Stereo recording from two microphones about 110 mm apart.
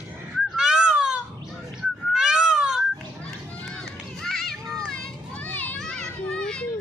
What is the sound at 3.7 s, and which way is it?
Run, 5° left (ahead or behind).